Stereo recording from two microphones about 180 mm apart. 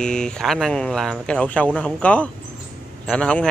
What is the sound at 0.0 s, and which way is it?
Speech, 5° left (ahead or behind).